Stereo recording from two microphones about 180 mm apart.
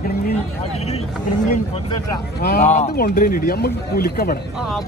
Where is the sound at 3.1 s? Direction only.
55° left (ahead or behind).